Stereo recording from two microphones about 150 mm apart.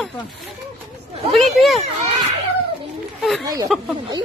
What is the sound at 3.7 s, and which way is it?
Speech, centre (ahead or behind).